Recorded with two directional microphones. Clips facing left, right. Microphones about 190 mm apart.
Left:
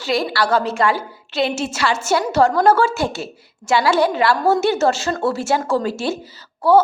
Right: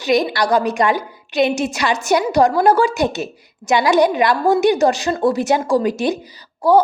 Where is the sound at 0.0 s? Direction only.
20° right (ahead or behind).